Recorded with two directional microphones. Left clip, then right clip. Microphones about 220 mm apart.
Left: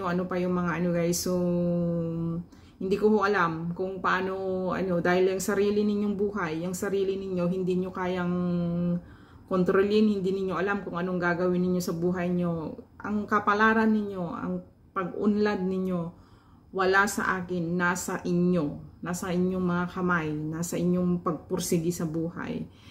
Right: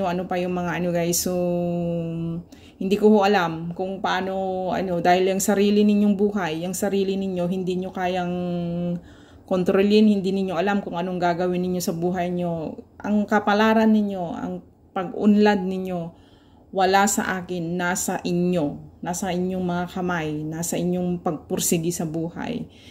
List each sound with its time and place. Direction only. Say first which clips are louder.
0.0 s a woman's voice: right 5 dB; 10° right (ahead or behind)
2.9 s a woman's voice: right 6 dB; 15° right (ahead or behind)